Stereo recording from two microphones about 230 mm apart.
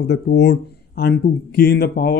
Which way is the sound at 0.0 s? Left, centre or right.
Left.